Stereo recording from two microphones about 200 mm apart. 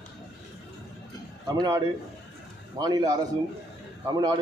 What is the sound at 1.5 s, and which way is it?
Speech, 20° right (ahead or behind).